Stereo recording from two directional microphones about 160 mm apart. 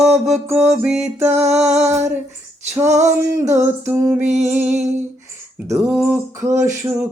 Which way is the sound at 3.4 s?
15° right (ahead or behind).